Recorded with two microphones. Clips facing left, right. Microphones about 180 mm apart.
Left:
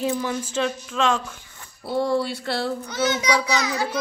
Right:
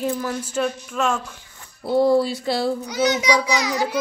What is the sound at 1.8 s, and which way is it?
Speech, 25° right (ahead or behind).